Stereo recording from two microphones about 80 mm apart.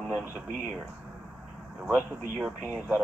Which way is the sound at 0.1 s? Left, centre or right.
Right.